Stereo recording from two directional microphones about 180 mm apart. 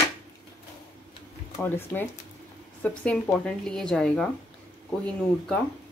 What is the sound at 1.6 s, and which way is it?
A woman's voice, 10° left (ahead or behind).